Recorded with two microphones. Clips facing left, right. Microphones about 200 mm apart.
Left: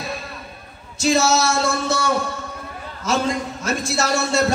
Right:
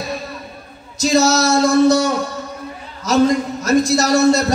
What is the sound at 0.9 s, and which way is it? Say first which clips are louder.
A man's voice: right 3 dB; 40° right (ahead or behind).